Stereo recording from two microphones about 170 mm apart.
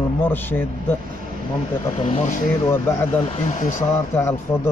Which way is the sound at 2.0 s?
40° left (ahead or behind).